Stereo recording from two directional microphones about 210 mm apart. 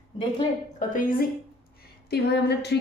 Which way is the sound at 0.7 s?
40° left (ahead or behind).